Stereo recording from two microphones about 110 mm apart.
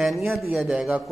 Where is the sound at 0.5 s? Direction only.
10° right (ahead or behind).